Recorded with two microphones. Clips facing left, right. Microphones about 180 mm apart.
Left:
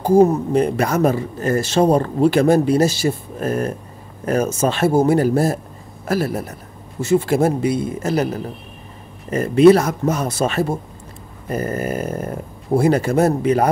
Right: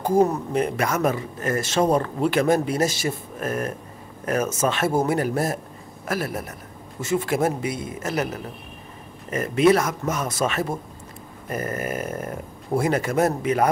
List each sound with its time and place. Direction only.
0.0 s speech: 30° left (ahead or behind)